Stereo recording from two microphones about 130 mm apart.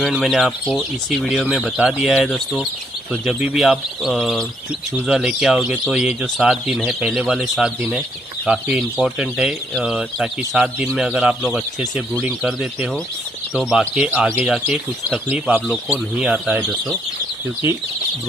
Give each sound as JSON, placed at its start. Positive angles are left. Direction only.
{"t": 0.1, "sound": "speech", "side_deg": -5}
{"t": 11.8, "sound": "speech", "side_deg": -15}
{"t": 12.4, "sound": "speech", "side_deg": -5}